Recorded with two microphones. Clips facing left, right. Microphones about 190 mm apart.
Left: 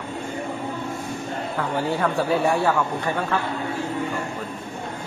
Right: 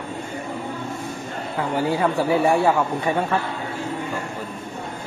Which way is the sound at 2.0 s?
20° right (ahead or behind).